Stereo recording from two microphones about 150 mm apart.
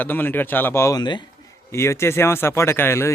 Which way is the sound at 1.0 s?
30° left (ahead or behind).